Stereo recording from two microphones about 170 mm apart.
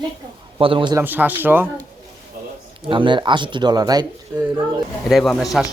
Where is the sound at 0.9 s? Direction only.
10° right (ahead or behind).